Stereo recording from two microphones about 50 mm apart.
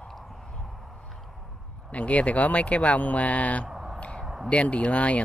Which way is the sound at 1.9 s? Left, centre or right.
Left.